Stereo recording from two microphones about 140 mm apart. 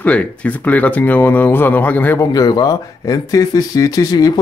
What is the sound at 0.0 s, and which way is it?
Speech, 10° left (ahead or behind).